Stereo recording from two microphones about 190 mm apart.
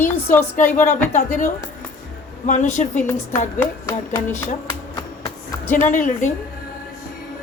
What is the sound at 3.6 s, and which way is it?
Speech, 15° left (ahead or behind).